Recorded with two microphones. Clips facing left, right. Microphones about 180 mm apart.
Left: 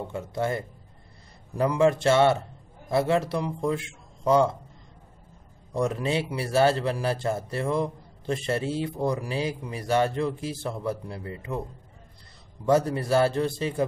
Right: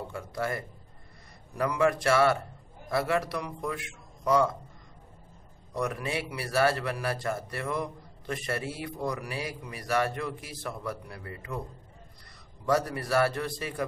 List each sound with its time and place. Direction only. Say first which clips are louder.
0.1 s speech: left 5 dB; 25° left (ahead or behind)
5.7 s speech: left 6 dB; 25° left (ahead or behind)
12.6 s speech: left 5 dB; 25° left (ahead or behind)